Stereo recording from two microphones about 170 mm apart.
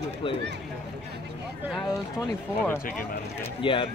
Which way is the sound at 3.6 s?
30° left (ahead or behind).